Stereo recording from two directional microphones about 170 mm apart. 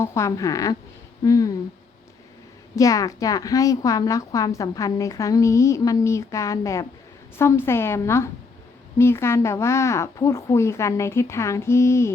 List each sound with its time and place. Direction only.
0.0 s a woman's voice: 15° left (ahead or behind)
2.7 s a woman's voice: 20° left (ahead or behind)